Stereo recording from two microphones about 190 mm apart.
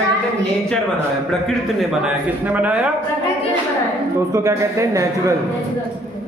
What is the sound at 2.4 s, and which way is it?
Speech, 10° right (ahead or behind).